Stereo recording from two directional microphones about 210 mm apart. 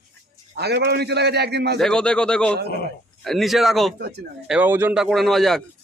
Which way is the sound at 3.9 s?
50° right (ahead or behind).